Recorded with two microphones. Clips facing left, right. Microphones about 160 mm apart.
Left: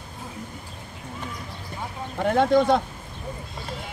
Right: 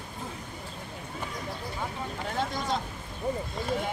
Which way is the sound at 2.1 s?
60° left (ahead or behind).